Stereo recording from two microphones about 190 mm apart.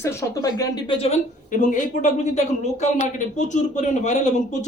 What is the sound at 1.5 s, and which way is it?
Speech, 45° left (ahead or behind).